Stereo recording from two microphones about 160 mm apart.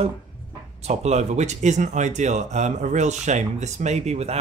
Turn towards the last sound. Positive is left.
turn(degrees=-40)  # may be behind; listen again after turning